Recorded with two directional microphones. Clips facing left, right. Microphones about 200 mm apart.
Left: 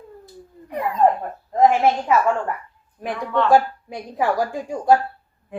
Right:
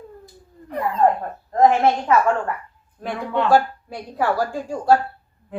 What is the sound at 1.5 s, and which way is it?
Speech, 5° left (ahead or behind).